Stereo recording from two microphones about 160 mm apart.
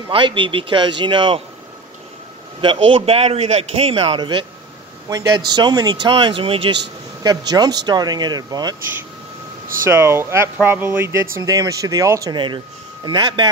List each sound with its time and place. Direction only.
0.1 s a man's voice: 30° right (ahead or behind)
2.6 s a man's voice: 35° right (ahead or behind)
9.8 s speech: 15° right (ahead or behind)